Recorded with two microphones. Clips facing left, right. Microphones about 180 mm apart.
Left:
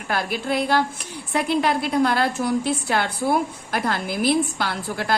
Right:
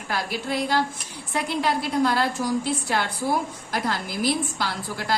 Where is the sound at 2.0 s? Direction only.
60° left (ahead or behind).